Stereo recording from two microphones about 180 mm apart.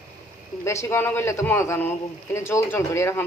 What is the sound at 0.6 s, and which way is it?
Speech, 15° left (ahead or behind).